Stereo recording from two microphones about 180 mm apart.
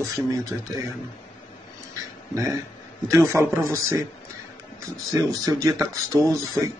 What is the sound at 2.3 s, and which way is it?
Speech, 15° right (ahead or behind).